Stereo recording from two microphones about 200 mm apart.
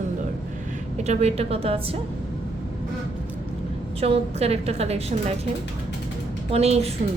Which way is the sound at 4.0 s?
30° right (ahead or behind).